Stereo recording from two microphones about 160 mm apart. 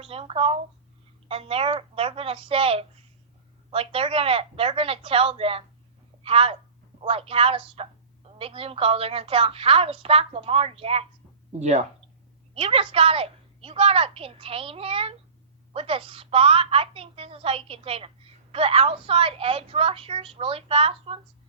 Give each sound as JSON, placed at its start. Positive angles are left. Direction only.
{"t": 0.0, "sound": "speech", "side_deg": -35}
{"t": 12.5, "sound": "speech", "side_deg": -35}